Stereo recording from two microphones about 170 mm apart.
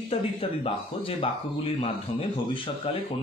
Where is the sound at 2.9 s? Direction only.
35° left (ahead or behind).